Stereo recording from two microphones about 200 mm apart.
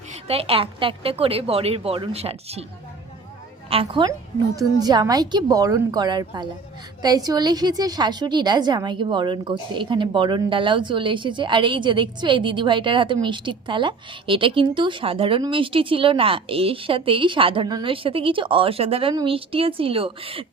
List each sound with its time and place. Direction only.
0.1 s a woman's voice: 30° right (ahead or behind)
3.7 s a woman's voice: 25° right (ahead or behind)